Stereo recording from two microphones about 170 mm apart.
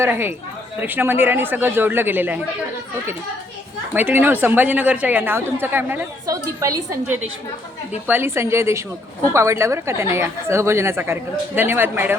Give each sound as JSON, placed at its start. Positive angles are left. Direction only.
{"t": 0.0, "sound": "speech", "side_deg": -15}
{"t": 3.9, "sound": "speech", "side_deg": -10}